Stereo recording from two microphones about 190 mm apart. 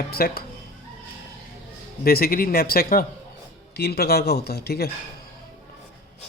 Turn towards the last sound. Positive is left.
turn(degrees=55)  # may be behind; listen again after turning